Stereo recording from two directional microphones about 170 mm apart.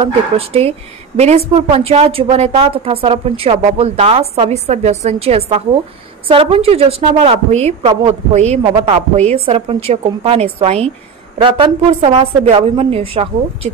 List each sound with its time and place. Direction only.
0.0 s a woman's voice: 35° right (ahead or behind)